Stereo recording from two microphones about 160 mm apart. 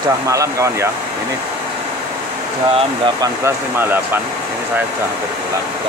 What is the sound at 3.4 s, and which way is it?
Speech, 15° right (ahead or behind).